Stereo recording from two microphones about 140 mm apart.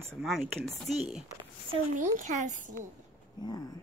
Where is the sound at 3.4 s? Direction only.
25° left (ahead or behind).